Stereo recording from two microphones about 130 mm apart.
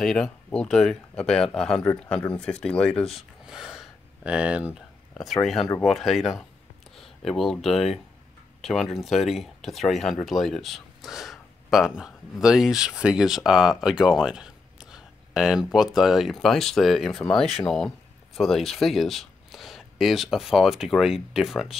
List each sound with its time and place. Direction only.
0.0 s speech: 5° left (ahead or behind)
3.2 s a sound: 5° right (ahead or behind)
5.1 s speech: centre (ahead or behind)